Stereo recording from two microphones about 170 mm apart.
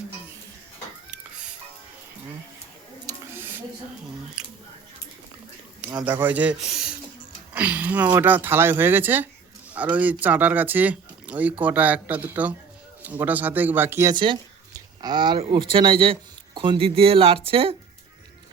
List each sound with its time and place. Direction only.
3.1 s a sound: 20° right (ahead or behind)
4.4 s speech: 5° right (ahead or behind)
6.1 s speech: 10° right (ahead or behind)
14.1 s speech: 30° right (ahead or behind)